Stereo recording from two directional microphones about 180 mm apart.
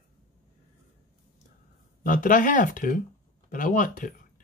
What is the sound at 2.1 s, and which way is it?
Speech, 45° left (ahead or behind).